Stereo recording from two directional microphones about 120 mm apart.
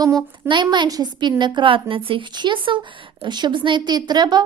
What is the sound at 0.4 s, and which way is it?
A woman's voice, 40° right (ahead or behind).